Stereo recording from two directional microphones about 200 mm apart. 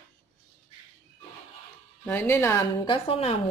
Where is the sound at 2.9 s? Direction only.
30° left (ahead or behind).